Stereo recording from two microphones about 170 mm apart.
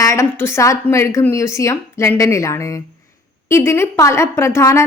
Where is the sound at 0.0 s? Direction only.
15° left (ahead or behind).